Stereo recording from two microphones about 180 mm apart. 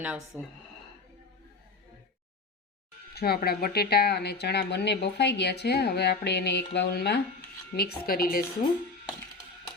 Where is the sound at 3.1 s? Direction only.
60° left (ahead or behind).